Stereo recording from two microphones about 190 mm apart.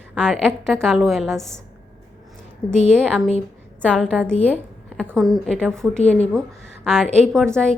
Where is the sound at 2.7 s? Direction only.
5° left (ahead or behind).